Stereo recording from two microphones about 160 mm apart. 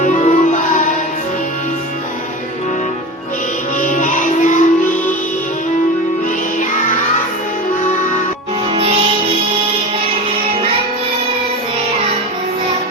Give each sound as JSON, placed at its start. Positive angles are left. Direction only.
{"t": 0.0, "sound": "music", "side_deg": 50}
{"t": 3.8, "sound": "music", "side_deg": 50}